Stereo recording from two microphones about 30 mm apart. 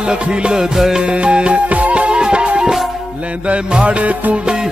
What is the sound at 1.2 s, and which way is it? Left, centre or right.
Music, right.